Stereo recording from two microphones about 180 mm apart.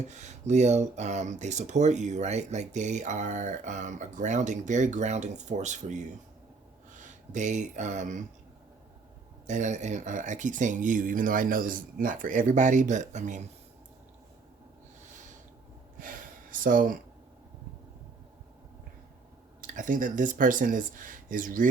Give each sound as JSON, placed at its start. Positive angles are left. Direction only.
{"t": 0.0, "sound": "speech", "side_deg": -40}
{"t": 9.5, "sound": "speech", "side_deg": -45}
{"t": 16.0, "sound": "gasp", "side_deg": -50}
{"t": 19.6, "sound": "speech", "side_deg": -45}